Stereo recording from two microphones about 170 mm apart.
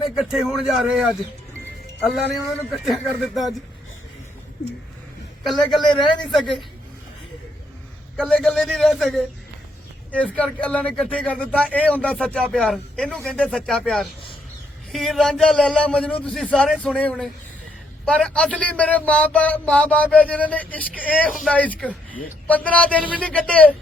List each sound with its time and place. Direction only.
0.2 s a man's voice: centre (ahead or behind)
2.0 s a man's voice: centre (ahead or behind)
5.5 s a man's voice: centre (ahead or behind)
5.8 s a man's voice: 25° left (ahead or behind)
8.3 s a man's voice: 5° left (ahead or behind)
10.3 s a man's voice: 5° left (ahead or behind)